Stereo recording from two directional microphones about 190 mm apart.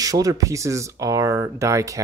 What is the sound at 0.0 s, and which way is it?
Speech, 20° right (ahead or behind).